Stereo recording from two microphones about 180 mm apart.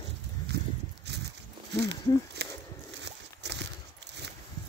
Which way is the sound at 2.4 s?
70° right (ahead or behind).